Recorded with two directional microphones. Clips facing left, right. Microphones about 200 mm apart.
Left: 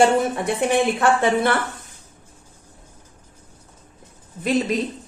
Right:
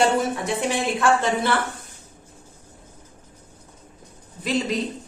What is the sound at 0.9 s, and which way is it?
Speech, 55° left (ahead or behind).